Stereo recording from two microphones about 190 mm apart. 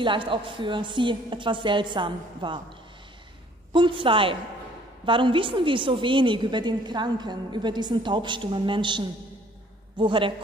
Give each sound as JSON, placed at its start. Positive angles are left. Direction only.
{"t": 0.0, "sound": "a woman's voice", "side_deg": -25}
{"t": 3.7, "sound": "a woman's voice", "side_deg": -25}